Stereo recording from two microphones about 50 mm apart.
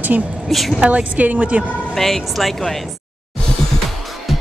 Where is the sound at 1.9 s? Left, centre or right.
Centre.